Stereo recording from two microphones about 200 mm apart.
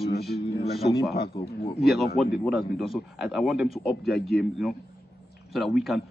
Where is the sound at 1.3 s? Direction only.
25° left (ahead or behind).